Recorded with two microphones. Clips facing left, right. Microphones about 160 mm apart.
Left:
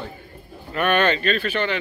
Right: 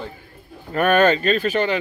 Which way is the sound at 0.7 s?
40° right (ahead or behind).